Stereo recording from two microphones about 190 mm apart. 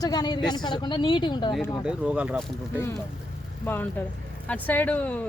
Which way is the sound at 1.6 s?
10° left (ahead or behind).